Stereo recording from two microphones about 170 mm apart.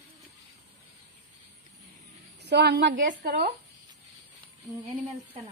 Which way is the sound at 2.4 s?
80° right.